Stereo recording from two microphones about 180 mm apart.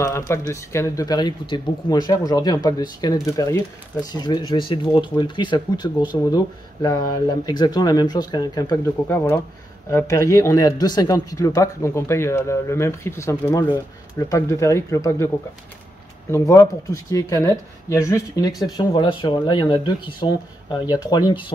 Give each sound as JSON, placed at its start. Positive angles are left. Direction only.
{"t": 0.3, "sound": "speech", "side_deg": 15}
{"t": 16.3, "sound": "speech", "side_deg": 15}